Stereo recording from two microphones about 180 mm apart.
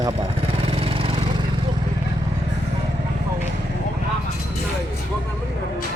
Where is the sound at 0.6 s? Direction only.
30° right (ahead or behind).